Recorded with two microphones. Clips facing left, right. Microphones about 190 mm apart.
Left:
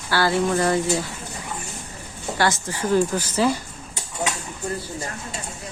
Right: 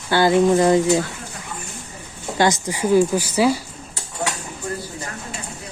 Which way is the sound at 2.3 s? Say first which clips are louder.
Right 4 dB; 20° right (ahead or behind).